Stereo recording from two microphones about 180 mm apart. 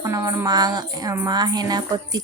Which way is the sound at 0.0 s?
15° right (ahead or behind).